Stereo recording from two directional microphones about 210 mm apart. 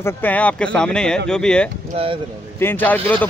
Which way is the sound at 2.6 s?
10° left (ahead or behind).